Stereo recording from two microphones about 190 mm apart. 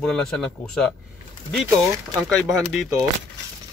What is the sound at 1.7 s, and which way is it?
Speech, 15° right (ahead or behind).